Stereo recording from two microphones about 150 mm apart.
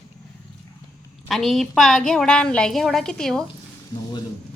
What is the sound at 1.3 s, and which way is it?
A woman's voice, centre (ahead or behind).